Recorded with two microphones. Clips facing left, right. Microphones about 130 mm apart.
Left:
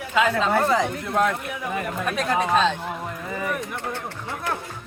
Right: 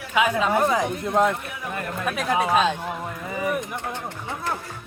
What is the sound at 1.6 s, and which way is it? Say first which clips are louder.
Speech: left 1 dB; 5° left (ahead or behind).